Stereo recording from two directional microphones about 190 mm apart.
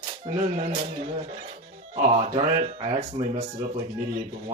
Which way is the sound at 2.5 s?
35° right (ahead or behind).